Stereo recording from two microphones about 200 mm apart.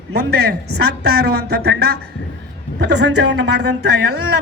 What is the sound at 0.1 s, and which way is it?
A woman's voice, 55° right (ahead or behind).